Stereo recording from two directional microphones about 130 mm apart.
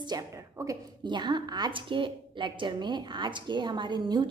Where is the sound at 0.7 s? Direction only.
35° right (ahead or behind).